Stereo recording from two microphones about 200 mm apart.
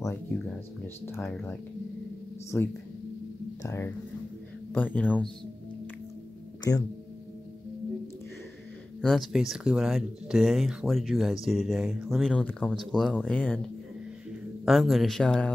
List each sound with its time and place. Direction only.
2.5 s speech: 10° left (ahead or behind)
6.7 s speech: 15° left (ahead or behind)
9.0 s speech: centre (ahead or behind)
14.6 s speech: centre (ahead or behind)